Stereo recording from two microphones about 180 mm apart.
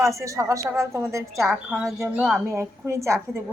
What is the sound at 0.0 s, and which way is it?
A woman's voice, 15° right (ahead or behind).